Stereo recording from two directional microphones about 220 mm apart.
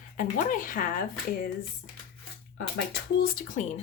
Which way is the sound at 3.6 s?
35° left (ahead or behind).